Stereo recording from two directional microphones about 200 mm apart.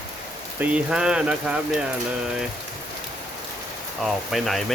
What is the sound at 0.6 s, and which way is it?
Speech, 5° right (ahead or behind).